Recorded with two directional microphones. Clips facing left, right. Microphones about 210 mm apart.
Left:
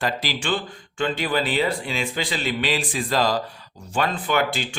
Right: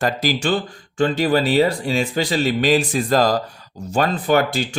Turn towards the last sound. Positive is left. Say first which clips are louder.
# right 6 dB
turn(degrees=-40)  # may be behind; listen again after turning